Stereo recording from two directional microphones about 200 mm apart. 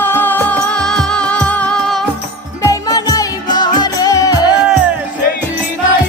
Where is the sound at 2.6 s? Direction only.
15° left (ahead or behind).